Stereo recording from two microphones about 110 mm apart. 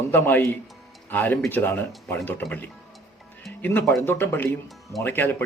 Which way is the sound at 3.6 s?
20° left (ahead or behind).